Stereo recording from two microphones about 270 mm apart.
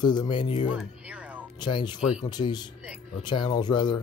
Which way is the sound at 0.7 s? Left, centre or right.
Centre.